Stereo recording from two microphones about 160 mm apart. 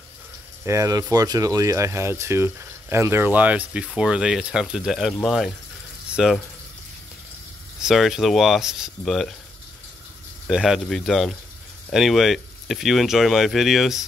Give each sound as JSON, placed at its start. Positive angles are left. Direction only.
{"t": 0.7, "sound": "speech", "side_deg": -20}
{"t": 7.8, "sound": "speech", "side_deg": 0}
{"t": 10.4, "sound": "speech", "side_deg": 0}